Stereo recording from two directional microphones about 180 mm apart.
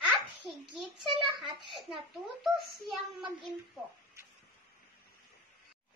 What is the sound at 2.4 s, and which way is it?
Speech, centre (ahead or behind).